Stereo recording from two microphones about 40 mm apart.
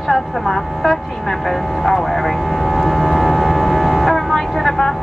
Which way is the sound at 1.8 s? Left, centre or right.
Centre.